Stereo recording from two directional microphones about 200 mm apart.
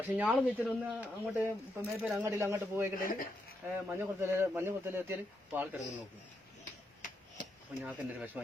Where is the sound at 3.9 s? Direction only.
10° right (ahead or behind).